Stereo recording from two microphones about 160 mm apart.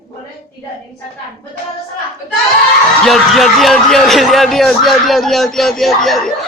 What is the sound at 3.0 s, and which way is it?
A man's voice, centre (ahead or behind).